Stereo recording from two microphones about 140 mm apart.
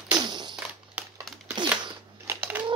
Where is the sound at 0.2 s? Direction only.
30° right (ahead or behind).